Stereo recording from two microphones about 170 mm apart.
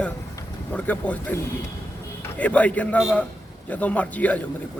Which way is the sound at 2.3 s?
10° left (ahead or behind).